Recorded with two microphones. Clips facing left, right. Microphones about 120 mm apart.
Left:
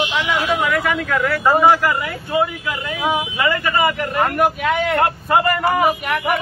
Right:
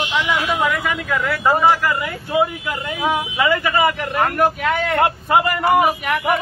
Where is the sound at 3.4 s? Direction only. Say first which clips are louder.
Right 3 dB; 5° right (ahead or behind).